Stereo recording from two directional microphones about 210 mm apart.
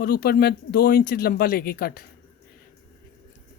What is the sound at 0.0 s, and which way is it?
Speech, 45° left (ahead or behind).